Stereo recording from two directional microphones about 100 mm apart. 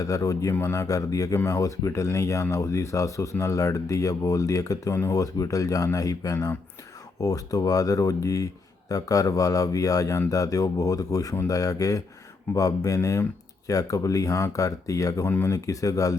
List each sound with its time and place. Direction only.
0.0 s speech: 35° left (ahead or behind)
15.3 s speech: 20° left (ahead or behind)
15.5 s speech: 35° left (ahead or behind)